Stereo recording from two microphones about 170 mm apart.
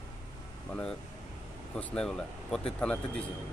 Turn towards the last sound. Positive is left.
turn(degrees=5)  # may be behind; listen again after turning